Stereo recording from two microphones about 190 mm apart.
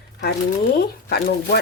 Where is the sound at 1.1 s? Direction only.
60° left (ahead or behind).